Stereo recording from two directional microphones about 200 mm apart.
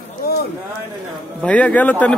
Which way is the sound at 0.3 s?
50° left (ahead or behind).